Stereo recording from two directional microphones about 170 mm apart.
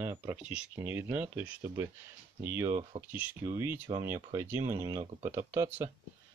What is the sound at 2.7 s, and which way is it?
Speech, 35° right (ahead or behind).